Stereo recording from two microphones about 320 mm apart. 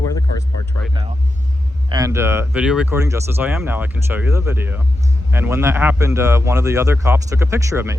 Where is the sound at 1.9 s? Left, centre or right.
Centre.